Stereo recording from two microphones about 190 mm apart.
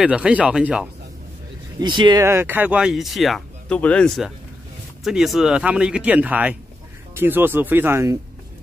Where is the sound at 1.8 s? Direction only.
25° right (ahead or behind).